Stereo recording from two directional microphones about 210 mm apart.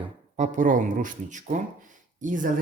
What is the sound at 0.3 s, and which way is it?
Speech, 35° right (ahead or behind).